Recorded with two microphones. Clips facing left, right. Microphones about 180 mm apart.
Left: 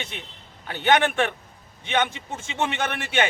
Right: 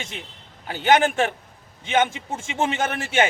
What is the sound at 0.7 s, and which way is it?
Speech, 35° right (ahead or behind).